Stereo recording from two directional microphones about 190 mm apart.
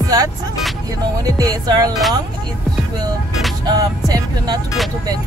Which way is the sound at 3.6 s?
20° right (ahead or behind).